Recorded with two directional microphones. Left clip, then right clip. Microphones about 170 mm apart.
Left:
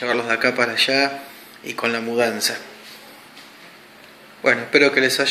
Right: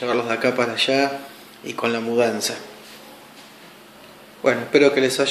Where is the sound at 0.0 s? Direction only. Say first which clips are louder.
Left 1 dB; centre (ahead or behind).